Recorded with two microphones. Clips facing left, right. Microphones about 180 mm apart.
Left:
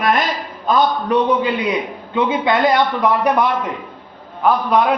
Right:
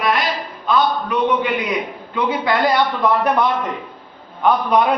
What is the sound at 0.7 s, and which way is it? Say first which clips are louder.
Speech: left 2 dB; 35° left (ahead or behind).